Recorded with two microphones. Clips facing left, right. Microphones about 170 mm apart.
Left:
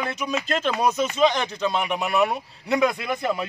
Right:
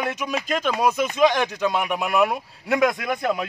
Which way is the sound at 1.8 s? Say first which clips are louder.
Right 1 dB; centre (ahead or behind).